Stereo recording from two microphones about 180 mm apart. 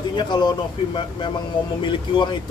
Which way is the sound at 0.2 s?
25° left (ahead or behind).